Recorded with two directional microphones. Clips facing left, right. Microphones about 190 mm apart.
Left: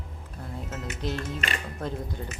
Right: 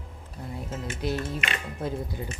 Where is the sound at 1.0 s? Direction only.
10° right (ahead or behind).